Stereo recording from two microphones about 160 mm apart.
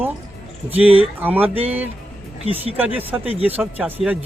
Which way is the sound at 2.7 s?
10° right (ahead or behind).